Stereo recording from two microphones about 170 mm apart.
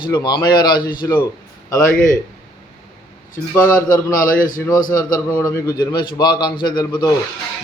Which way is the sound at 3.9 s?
55° left (ahead or behind).